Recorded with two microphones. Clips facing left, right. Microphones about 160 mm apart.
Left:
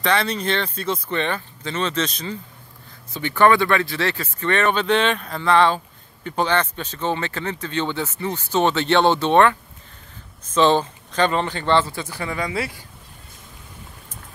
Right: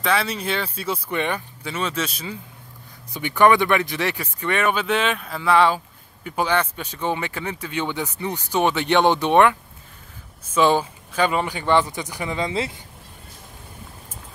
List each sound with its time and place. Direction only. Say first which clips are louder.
0.0 s speech: left 1 dB; 5° right (ahead or behind); by 12.8 s 25° right (ahead or behind)